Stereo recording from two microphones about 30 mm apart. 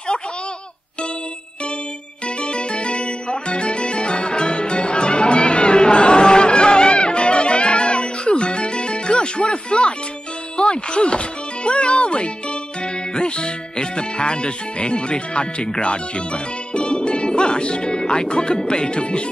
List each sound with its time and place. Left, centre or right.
2.2 s music: left
13.1 s speech: left
16.7 s music: left
18.7 s speech: left